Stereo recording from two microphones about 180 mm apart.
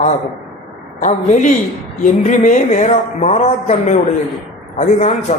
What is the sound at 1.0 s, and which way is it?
A woman's voice, 40° left (ahead or behind).